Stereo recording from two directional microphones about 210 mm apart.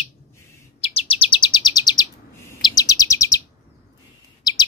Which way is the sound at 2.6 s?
15° left (ahead or behind).